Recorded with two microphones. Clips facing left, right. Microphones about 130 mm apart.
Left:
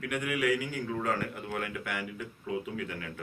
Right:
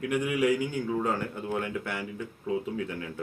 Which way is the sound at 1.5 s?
25° right (ahead or behind).